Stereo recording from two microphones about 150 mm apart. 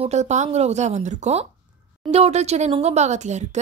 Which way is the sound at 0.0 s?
50° right (ahead or behind).